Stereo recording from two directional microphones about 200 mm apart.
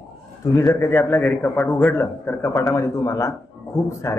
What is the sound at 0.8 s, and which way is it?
A man's voice, 10° left (ahead or behind).